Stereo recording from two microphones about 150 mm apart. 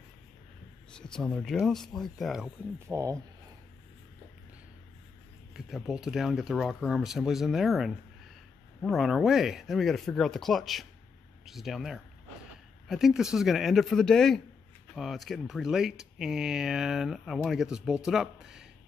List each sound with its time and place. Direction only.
0.9 s speech: 5° left (ahead or behind)
2.9 s speech: 20° right (ahead or behind)
5.5 s speech: centre (ahead or behind)